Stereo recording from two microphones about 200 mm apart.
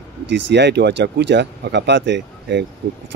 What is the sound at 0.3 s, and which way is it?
Speech, 60° right (ahead or behind).